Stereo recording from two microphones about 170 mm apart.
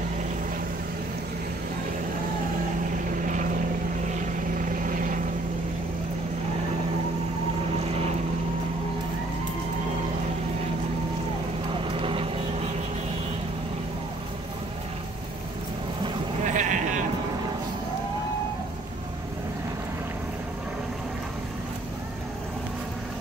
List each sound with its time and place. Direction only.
4.1 s vehicle: 50° right (ahead or behind)
11.8 s vehicle: 30° right (ahead or behind)
16.4 s sheep: 45° right (ahead or behind)